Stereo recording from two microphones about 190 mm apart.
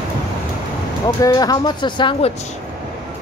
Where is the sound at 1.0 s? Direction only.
20° left (ahead or behind).